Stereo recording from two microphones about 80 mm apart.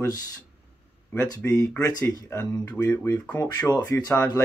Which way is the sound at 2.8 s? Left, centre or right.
Left.